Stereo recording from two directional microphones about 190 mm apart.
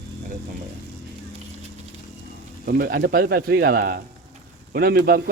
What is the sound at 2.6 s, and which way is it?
Speech, 55° right (ahead or behind).